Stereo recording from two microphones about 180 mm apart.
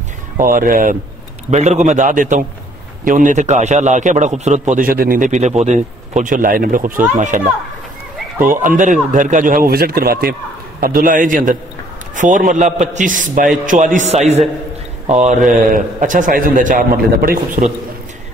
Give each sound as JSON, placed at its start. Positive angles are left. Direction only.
{"t": 0.4, "sound": "a man's voice", "side_deg": -50}
{"t": 1.5, "sound": "a man's voice", "side_deg": -40}